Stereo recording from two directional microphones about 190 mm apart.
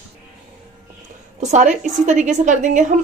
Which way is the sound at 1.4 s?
40° right (ahead or behind).